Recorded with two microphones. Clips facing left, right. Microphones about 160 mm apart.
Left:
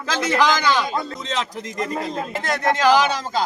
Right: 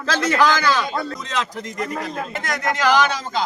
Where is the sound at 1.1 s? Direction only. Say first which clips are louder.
Even; 25° left (ahead or behind).